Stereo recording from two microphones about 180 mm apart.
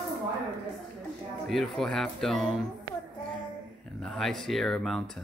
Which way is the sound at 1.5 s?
Centre (ahead or behind).